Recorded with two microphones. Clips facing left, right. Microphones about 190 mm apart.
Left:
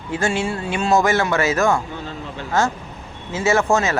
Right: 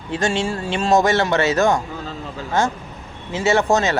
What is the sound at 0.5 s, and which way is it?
Speech, 35° right (ahead or behind).